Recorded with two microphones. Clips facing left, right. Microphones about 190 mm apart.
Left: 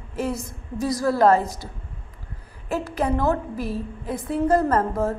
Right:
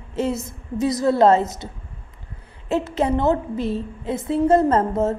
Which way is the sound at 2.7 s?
25° right (ahead or behind).